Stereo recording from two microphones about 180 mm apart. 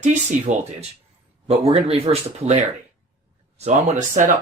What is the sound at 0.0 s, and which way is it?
Speech, 40° right (ahead or behind).